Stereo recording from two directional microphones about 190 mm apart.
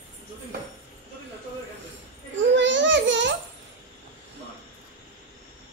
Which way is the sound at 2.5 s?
75° right (ahead or behind).